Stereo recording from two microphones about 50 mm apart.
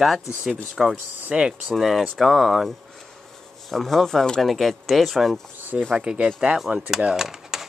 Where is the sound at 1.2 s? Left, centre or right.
Right.